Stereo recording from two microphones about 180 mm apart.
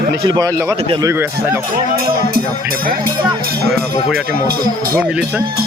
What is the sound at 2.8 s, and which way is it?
Speech, 55° right (ahead or behind).